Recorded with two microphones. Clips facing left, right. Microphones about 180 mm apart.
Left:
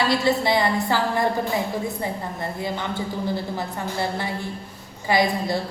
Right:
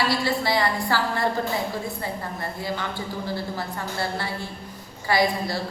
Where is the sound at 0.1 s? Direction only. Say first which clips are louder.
Left 3 dB; 20° left (ahead or behind).